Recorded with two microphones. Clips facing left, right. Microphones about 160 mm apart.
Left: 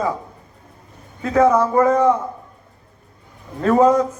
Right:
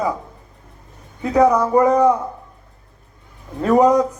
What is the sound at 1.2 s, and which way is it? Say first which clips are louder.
Speech: even; 15° right (ahead or behind).